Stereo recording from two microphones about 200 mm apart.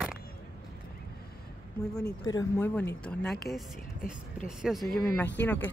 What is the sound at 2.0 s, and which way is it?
Speech, 20° left (ahead or behind).